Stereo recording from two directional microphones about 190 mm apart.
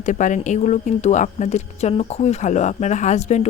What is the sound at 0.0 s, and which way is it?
Speech, 40° left (ahead or behind).